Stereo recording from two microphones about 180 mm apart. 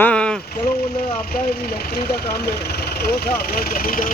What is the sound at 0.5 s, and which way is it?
Speech, 60° left (ahead or behind).